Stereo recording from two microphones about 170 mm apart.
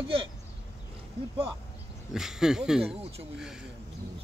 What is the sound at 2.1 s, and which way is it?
Speech, 5° right (ahead or behind).